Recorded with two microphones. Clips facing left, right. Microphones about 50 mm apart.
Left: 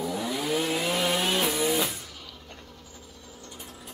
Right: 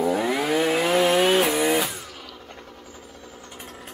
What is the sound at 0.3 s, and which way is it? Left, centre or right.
Chainsaw, right.